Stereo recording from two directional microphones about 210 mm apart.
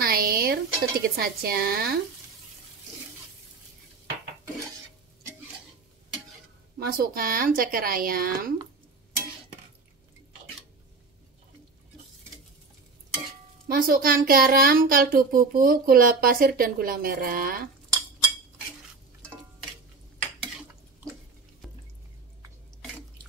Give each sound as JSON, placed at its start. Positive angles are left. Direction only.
{"t": 0.0, "sound": "speech", "side_deg": -45}
{"t": 6.8, "sound": "a child's voice", "side_deg": -45}
{"t": 13.7, "sound": "a child's voice", "side_deg": -45}